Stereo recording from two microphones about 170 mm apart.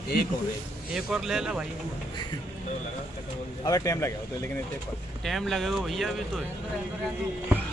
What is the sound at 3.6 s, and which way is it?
Speech, 20° left (ahead or behind).